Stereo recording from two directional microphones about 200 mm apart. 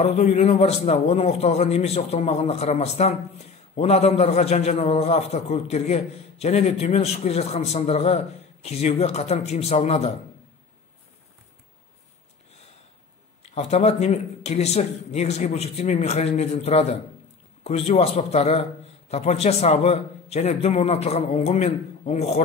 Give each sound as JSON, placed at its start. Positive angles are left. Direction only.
{"t": 0.0, "sound": "a man's voice", "side_deg": 35}
{"t": 13.4, "sound": "a man's voice", "side_deg": 30}